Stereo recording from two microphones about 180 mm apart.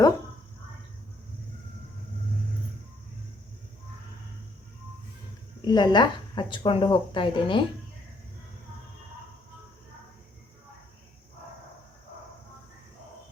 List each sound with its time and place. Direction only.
5.6 s speech: 25° left (ahead or behind)